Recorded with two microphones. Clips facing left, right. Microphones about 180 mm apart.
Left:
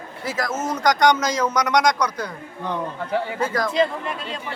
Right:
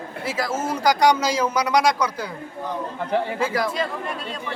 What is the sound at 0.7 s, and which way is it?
Speech, 10° right (ahead or behind).